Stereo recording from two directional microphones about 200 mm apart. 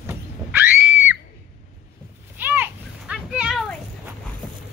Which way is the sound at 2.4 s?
10° right (ahead or behind).